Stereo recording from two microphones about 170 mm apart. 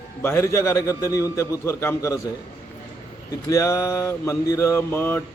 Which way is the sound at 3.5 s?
15° left (ahead or behind).